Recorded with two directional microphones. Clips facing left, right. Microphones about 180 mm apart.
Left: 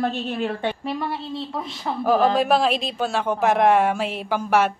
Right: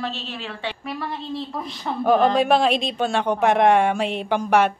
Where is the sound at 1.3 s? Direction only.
Centre (ahead or behind).